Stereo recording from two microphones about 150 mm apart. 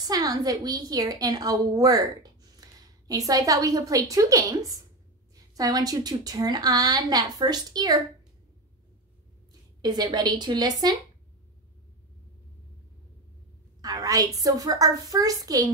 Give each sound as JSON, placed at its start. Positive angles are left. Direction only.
{"t": 0.0, "sound": "a woman's voice", "side_deg": -25}
{"t": 3.1, "sound": "a woman's voice", "side_deg": -25}
{"t": 9.5, "sound": "speech", "side_deg": -30}
{"t": 13.7, "sound": "a woman's voice", "side_deg": -25}